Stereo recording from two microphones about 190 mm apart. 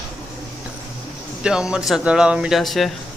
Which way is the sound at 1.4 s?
5° right (ahead or behind).